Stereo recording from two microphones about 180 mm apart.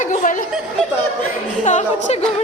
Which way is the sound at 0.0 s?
45° left (ahead or behind).